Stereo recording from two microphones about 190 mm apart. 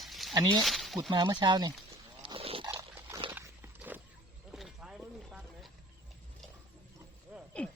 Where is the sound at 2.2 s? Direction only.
30° right (ahead or behind).